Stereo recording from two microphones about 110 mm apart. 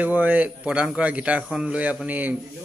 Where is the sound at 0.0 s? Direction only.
15° right (ahead or behind).